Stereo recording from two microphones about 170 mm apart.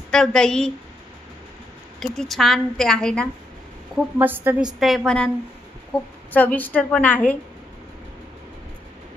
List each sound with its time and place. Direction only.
0.1 s a woman's voice: 5° left (ahead or behind)
2.0 s a woman's voice: centre (ahead or behind)
3.9 s a woman's voice: 10° right (ahead or behind)
4.7 s a woman's voice: centre (ahead or behind)